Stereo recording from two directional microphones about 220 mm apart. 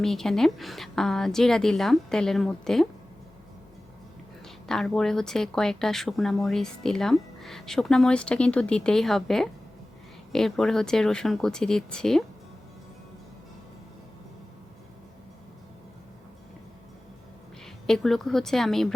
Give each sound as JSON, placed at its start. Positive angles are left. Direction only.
{"t": 0.0, "sound": "speech", "side_deg": 0}
{"t": 4.4, "sound": "speech", "side_deg": 0}
{"t": 17.8, "sound": "speech", "side_deg": 0}